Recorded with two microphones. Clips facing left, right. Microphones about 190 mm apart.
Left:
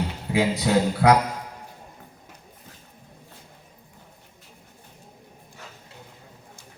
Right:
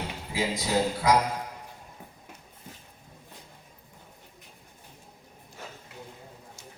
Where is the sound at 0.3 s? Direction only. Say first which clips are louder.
Left 6 dB; 65° left (ahead or behind).